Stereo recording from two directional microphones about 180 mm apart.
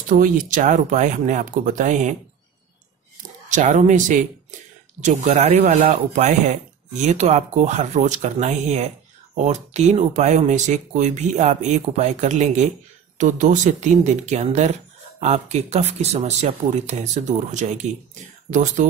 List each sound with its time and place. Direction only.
0.2 s speech: 45° right (ahead or behind)
3.4 s speech: 45° right (ahead or behind)